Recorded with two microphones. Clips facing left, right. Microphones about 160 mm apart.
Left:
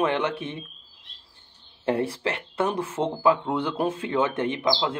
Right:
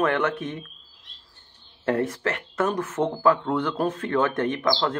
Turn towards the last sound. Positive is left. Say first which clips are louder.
# right 1 dB
turn(degrees=10)  # may be behind; listen again after turning